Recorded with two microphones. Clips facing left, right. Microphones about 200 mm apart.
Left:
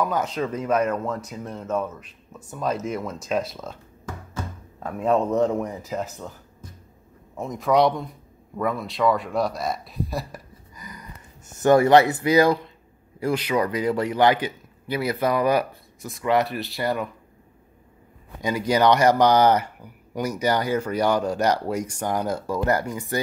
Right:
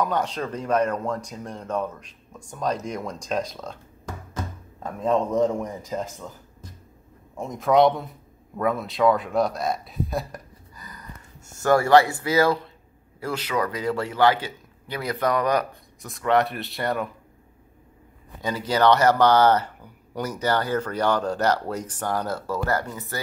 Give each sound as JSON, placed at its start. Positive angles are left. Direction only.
{"t": 0.0, "sound": "speech", "side_deg": 5}
{"t": 4.8, "sound": "speech", "side_deg": 5}
{"t": 7.3, "sound": "speech", "side_deg": 0}
{"t": 10.8, "sound": "a sound", "side_deg": 15}
{"t": 13.2, "sound": "a man's voice", "side_deg": 15}
{"t": 18.4, "sound": "a man's voice", "side_deg": 15}